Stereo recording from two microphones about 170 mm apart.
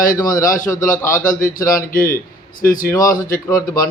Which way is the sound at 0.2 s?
20° left (ahead or behind).